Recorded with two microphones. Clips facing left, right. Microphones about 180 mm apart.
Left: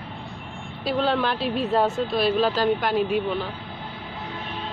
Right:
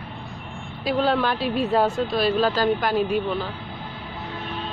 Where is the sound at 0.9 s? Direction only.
5° right (ahead or behind).